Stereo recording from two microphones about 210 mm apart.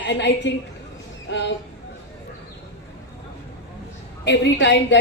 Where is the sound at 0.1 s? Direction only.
55° left (ahead or behind).